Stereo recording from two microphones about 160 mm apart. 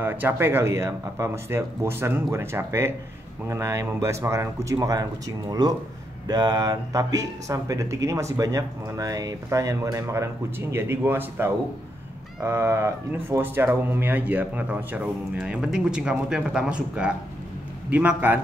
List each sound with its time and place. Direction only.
0.0 s speech: 15° right (ahead or behind)
6.2 s speech: 25° right (ahead or behind)